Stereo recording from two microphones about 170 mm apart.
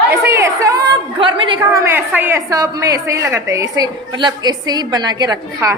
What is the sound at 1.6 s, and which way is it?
A woman's voice, 15° right (ahead or behind).